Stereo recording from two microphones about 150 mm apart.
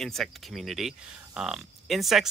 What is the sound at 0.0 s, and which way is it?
Speech, centre (ahead or behind).